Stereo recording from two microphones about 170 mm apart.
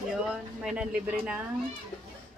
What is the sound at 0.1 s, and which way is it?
Speech, 5° right (ahead or behind).